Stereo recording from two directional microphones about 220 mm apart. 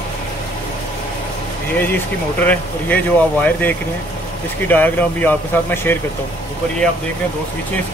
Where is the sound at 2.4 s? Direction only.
5° left (ahead or behind).